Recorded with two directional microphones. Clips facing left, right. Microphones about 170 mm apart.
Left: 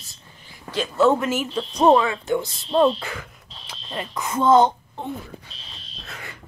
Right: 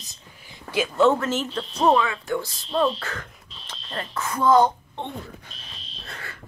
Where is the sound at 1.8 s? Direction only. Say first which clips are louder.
Left 4 dB; 30° left (ahead or behind).